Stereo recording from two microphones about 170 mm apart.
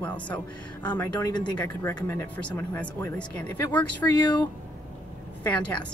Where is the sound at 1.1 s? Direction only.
25° left (ahead or behind).